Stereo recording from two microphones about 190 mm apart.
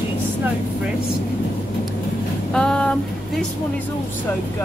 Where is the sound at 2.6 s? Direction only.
5° left (ahead or behind).